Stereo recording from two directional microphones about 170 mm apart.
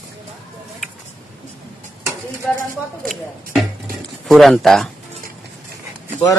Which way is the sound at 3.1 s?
Centre (ahead or behind).